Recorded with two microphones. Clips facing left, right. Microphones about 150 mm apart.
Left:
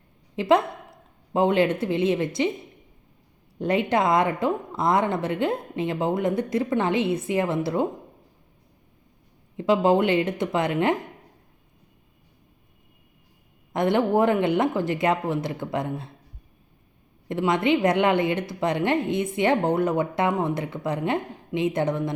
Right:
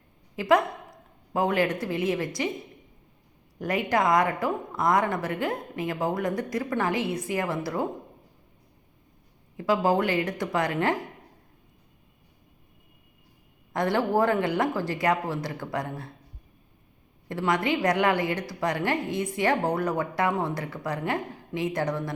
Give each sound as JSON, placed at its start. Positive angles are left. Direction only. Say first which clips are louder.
{"t": 0.3, "sound": "a woman's voice", "louder": "left 2 dB", "side_deg": 25}
{"t": 3.6, "sound": "a woman's voice", "louder": "left 3 dB", "side_deg": 25}
{"t": 9.6, "sound": "a woman's voice", "louder": "left 4 dB", "side_deg": 25}
{"t": 13.7, "sound": "a woman's voice", "louder": "left 3 dB", "side_deg": 20}
{"t": 17.2, "sound": "a woman's voice", "louder": "left 4 dB", "side_deg": 20}